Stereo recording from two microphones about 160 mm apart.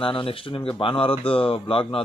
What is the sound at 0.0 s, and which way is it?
A man's voice, 35° left (ahead or behind).